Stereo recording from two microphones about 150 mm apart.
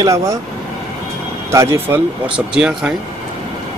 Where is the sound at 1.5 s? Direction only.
20° right (ahead or behind).